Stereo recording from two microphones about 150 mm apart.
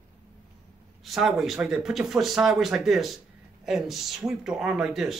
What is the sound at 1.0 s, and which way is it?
Speech, centre (ahead or behind).